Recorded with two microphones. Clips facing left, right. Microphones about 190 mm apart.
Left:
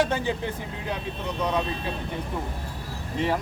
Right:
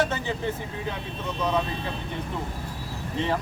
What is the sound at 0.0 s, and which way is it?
Speech, 15° left (ahead or behind).